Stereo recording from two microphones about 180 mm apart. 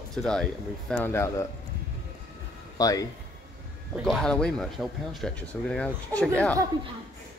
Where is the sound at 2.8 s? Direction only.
20° left (ahead or behind).